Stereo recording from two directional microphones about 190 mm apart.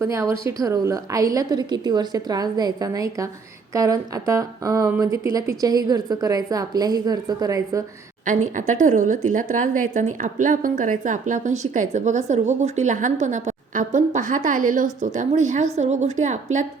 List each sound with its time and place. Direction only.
0.0 s speech: 15° right (ahead or behind)
8.2 s a woman's voice: 45° right (ahead or behind)